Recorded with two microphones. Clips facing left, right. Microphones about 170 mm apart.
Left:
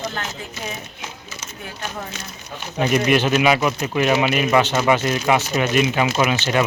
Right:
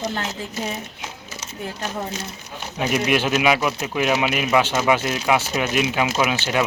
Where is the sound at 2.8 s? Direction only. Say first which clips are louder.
Left 3 dB; 5° right (ahead or behind).